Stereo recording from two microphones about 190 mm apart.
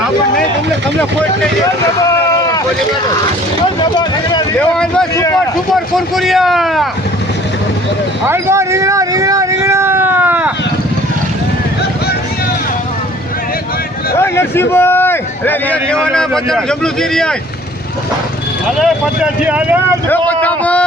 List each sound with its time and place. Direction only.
4.5 s speech: 5° left (ahead or behind)
5.1 s a man's voice: 15° left (ahead or behind)
6.1 s speech: centre (ahead or behind)
8.3 s a sound: 15° right (ahead or behind)
14.2 s a man's voice: 15° left (ahead or behind)
18.8 s speech: 5° right (ahead or behind)
20.1 s a man's voice: 10° left (ahead or behind)